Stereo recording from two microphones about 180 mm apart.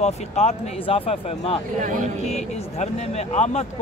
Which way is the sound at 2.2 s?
35° left (ahead or behind).